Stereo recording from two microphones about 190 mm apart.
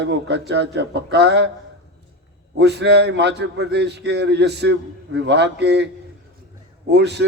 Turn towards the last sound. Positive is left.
turn(degrees=-60)  # may be behind; listen again after turning